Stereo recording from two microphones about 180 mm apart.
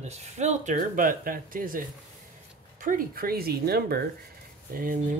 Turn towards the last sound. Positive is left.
turn(degrees=-50)  # may be behind; listen again after turning